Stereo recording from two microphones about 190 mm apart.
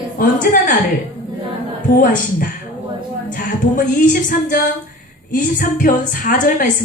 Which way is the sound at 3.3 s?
45° left (ahead or behind).